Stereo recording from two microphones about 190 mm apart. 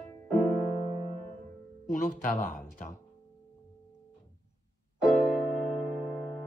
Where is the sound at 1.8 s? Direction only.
50° left (ahead or behind).